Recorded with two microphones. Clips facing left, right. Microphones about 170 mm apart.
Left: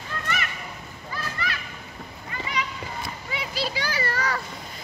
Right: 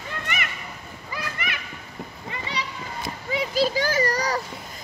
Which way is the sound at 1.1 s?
20° right (ahead or behind).